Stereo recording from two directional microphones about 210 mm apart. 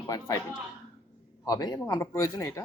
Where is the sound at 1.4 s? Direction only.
20° left (ahead or behind).